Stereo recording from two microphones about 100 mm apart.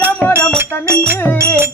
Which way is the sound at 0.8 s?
25° right (ahead or behind).